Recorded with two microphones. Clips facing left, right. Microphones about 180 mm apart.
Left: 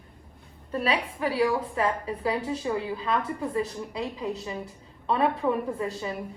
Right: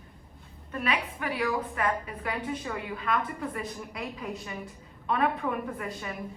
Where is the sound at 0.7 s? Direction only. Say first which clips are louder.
Left 4 dB; 30° left (ahead or behind).